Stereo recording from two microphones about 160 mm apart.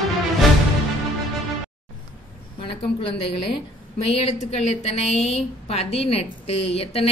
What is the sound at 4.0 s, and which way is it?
A woman's voice, 40° left (ahead or behind).